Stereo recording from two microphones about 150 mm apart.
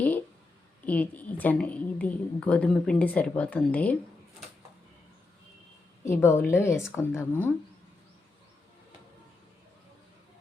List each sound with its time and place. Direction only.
0.9 s a woman's voice: 10° left (ahead or behind)
6.1 s a woman's voice: 15° left (ahead or behind)